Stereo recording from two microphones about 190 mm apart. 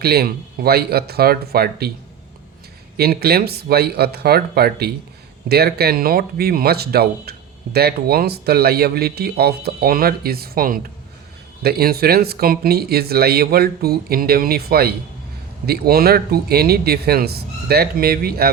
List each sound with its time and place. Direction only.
0.0 s speech: 55° right (ahead or behind)
3.0 s speech: 55° right (ahead or behind)